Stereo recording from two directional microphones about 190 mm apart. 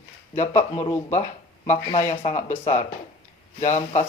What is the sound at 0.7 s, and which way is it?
Speech, 20° left (ahead or behind).